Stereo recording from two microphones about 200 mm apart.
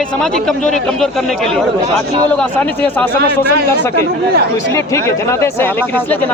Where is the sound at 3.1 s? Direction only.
50° right (ahead or behind).